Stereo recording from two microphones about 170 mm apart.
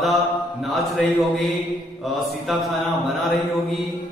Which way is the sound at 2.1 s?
Centre (ahead or behind).